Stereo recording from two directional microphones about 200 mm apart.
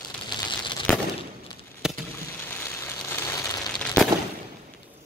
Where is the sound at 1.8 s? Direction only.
5° right (ahead or behind).